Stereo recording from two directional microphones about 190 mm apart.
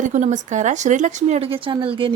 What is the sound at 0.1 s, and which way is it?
Speech, 40° right (ahead or behind).